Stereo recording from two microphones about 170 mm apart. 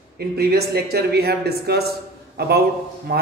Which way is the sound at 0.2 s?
65° right (ahead or behind).